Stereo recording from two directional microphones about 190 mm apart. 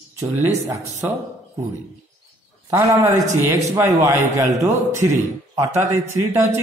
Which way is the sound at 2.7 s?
15° right (ahead or behind).